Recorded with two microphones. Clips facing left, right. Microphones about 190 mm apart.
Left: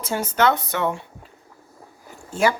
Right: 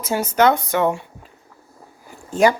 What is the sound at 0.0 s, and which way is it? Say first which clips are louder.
Speech: right 4 dB; 10° right (ahead or behind).